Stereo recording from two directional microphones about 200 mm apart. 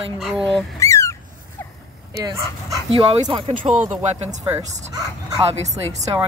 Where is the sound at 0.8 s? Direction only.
15° left (ahead or behind).